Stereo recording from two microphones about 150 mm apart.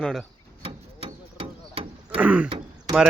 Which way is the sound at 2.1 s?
10° right (ahead or behind).